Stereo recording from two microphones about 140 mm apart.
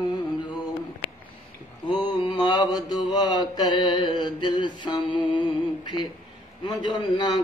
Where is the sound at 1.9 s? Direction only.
30° left (ahead or behind).